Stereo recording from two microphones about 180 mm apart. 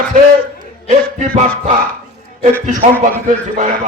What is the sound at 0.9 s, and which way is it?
Music, 40° right (ahead or behind).